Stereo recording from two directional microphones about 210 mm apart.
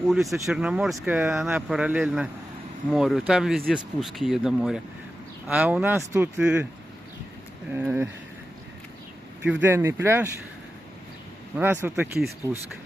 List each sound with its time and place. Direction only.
0.1 s speech: centre (ahead or behind)
7.7 s speech: 10° right (ahead or behind)
9.4 s speech: 10° right (ahead or behind)
11.5 s speech: 10° right (ahead or behind)